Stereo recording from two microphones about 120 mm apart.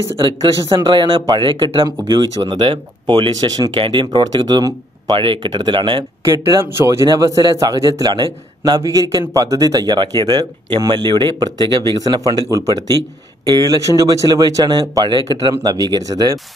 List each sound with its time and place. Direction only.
0.1 s speech: 50° right (ahead or behind)
3.7 s speech: 45° right (ahead or behind)
6.5 s speech: 25° right (ahead or behind); by 8.8 s 40° right (ahead or behind)
8.8 s speech: 30° right (ahead or behind)
14.3 s speech: 30° right (ahead or behind)